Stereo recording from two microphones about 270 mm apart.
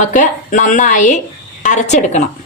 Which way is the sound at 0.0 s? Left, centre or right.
Left.